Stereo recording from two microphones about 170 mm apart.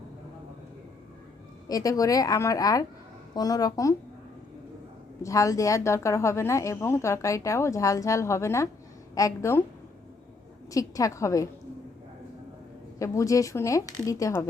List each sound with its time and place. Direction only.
1.6 s speech: 20° left (ahead or behind)
5.2 s a woman's voice: 20° left (ahead or behind)
10.7 s speech: 20° left (ahead or behind)
13.0 s speech: 20° left (ahead or behind)